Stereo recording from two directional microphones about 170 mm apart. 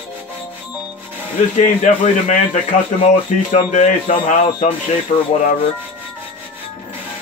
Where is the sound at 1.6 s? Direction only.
45° left (ahead or behind).